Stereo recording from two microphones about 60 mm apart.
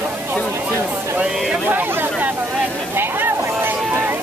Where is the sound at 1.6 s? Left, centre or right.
Right.